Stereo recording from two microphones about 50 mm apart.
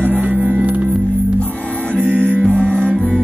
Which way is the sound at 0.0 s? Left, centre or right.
Right.